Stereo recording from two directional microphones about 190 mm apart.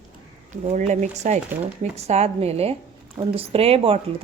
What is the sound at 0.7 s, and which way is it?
A woman's voice, 40° right (ahead or behind).